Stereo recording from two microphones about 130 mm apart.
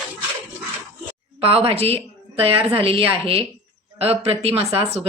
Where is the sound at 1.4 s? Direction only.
50° right (ahead or behind).